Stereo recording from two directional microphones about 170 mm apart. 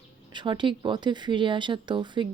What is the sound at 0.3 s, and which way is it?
Speech, 30° right (ahead or behind).